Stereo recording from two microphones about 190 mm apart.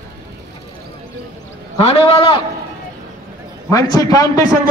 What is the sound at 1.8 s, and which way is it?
Speech, 30° left (ahead or behind).